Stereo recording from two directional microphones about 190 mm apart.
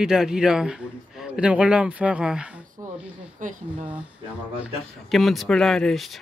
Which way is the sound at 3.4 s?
45° right (ahead or behind).